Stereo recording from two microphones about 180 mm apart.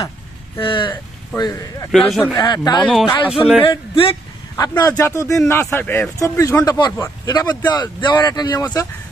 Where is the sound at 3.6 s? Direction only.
30° left (ahead or behind).